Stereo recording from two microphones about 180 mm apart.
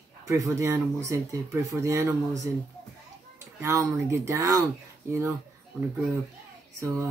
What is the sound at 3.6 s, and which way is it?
Speech, 15° right (ahead or behind).